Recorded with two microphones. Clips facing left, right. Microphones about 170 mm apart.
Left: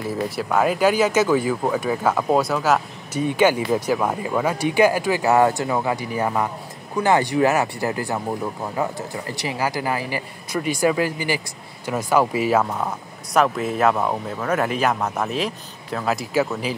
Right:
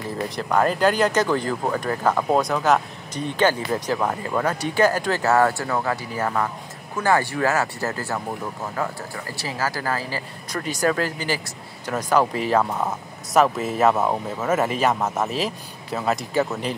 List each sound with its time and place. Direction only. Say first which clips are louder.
0.4 s speech: even; 5° left (ahead or behind)